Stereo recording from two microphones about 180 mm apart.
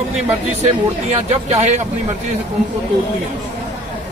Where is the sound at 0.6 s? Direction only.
40° right (ahead or behind).